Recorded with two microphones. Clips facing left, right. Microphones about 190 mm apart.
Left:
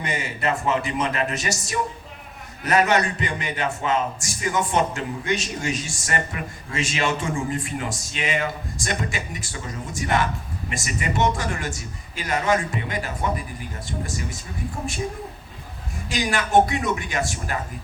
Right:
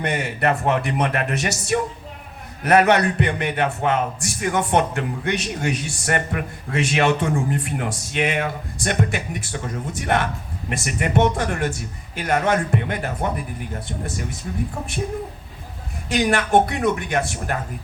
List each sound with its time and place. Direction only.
0.0 s a man's voice: 60° right (ahead or behind)
16.0 s a man's voice: 60° right (ahead or behind)